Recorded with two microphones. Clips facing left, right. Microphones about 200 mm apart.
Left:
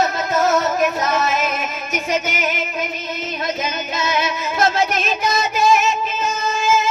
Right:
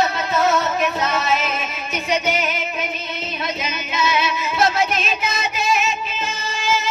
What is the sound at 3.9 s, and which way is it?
Music, 45° left (ahead or behind).